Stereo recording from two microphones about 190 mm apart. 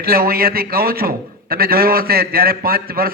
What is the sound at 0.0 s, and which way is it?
A man's voice, 50° right (ahead or behind).